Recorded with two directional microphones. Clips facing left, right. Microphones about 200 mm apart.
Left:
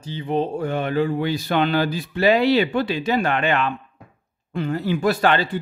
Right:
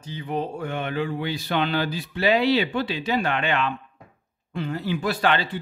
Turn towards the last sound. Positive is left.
turn(degrees=45)  # may be behind; listen again after turning